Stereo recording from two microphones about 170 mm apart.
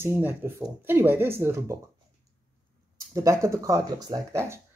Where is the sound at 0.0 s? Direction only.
10° right (ahead or behind).